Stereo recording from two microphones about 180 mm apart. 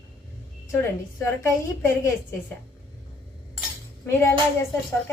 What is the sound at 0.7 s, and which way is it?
Speech, 15° left (ahead or behind).